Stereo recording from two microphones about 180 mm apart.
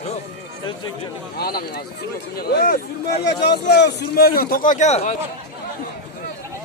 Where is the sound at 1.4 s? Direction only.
55° left (ahead or behind).